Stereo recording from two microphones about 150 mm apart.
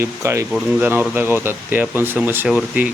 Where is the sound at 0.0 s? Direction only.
20° right (ahead or behind).